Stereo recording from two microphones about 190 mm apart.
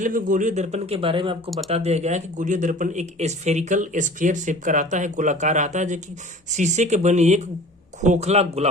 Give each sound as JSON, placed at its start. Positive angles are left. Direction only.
{"t": 0.0, "sound": "speech", "side_deg": -45}